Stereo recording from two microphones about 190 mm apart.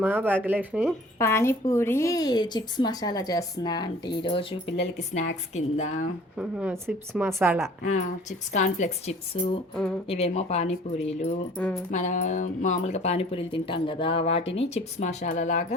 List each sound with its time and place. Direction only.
0.0 s speech: 10° right (ahead or behind)
1.2 s speech: 15° left (ahead or behind)
5.1 s speech: 35° left (ahead or behind)
6.3 s speech: 5° right (ahead or behind)
7.8 s speech: 40° left (ahead or behind)
11.5 s speech: 10° left (ahead or behind)
11.9 s speech: 40° left (ahead or behind)